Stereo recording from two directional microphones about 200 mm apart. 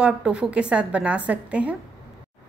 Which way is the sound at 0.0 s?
5° right (ahead or behind).